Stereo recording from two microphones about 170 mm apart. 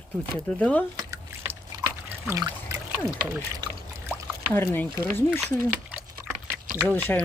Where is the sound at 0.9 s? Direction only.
20° right (ahead or behind).